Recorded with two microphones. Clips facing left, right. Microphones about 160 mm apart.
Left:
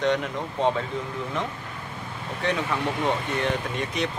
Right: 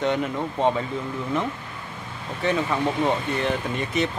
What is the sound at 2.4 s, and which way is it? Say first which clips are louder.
Speech: right 3 dB; 5° right (ahead or behind).